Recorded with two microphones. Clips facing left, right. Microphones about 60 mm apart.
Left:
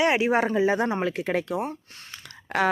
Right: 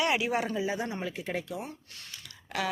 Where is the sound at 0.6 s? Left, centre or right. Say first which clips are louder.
Left 9 dB; left.